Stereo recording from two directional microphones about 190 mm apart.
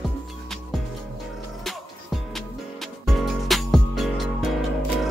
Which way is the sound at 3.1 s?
Centre (ahead or behind).